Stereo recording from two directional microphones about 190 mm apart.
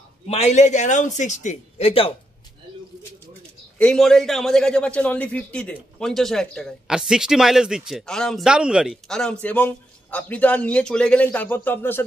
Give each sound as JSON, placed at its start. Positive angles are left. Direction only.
{"t": 0.3, "sound": "a man's voice", "side_deg": 35}
{"t": 3.7, "sound": "a man's voice", "side_deg": 5}